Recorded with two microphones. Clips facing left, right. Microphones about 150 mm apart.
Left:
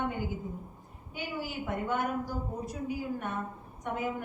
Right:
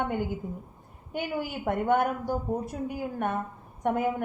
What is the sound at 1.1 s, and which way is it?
A woman's voice, 55° right (ahead or behind).